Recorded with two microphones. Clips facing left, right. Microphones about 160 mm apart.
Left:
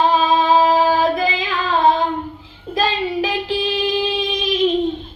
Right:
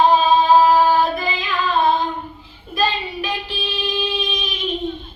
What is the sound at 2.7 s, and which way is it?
Child singing, 90° left.